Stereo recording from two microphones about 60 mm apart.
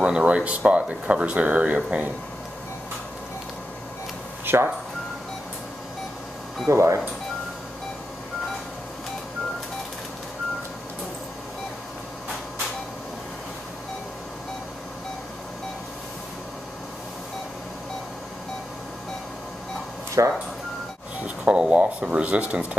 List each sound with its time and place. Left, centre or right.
0.0 s speech: centre
4.5 s speech: right
6.7 s speech: right
20.2 s a sound: right
21.5 s speech: centre